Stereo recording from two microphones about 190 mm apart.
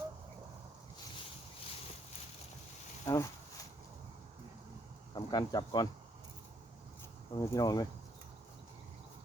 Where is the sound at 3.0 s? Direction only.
15° left (ahead or behind).